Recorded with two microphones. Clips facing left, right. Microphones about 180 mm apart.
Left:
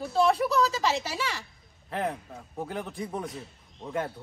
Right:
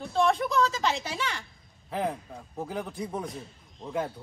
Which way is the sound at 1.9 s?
Centre (ahead or behind).